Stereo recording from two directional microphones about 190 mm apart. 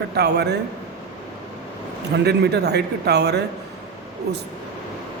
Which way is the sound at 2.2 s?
60° right (ahead or behind).